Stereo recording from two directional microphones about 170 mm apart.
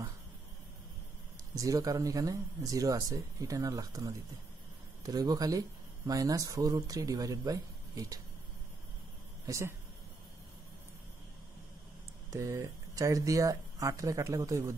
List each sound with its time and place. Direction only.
1.6 s speech: 20° right (ahead or behind)
9.5 s speech: 15° right (ahead or behind)
12.3 s speech: 20° right (ahead or behind)